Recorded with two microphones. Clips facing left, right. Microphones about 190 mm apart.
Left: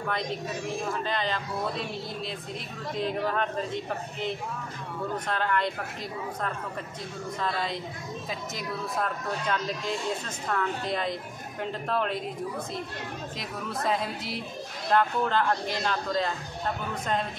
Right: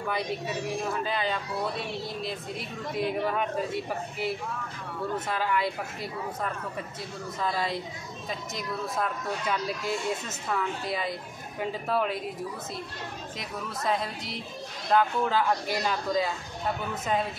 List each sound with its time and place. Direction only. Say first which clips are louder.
0.5 s a man's voice: right 1 dB; 65° right (ahead or behind)
1.0 s speech: even; 5° right (ahead or behind)
7.3 s speech: right 2 dB; centre (ahead or behind)
13.4 s speech: left 2 dB; centre (ahead or behind)